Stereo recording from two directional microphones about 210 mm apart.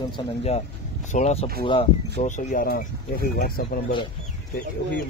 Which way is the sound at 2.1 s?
35° left (ahead or behind).